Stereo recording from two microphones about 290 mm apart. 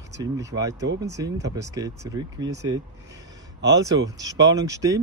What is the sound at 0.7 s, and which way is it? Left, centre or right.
Speech, right.